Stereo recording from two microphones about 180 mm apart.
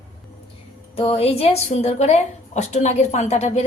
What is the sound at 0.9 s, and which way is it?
A woman's voice, 35° left (ahead or behind).